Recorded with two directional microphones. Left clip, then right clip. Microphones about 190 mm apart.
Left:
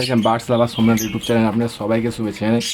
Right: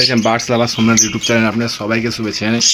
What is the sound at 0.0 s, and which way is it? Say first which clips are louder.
Speech: right 4 dB; 5° left (ahead or behind).